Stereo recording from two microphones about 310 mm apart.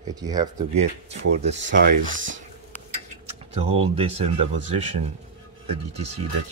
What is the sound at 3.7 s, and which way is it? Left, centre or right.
Speech, centre.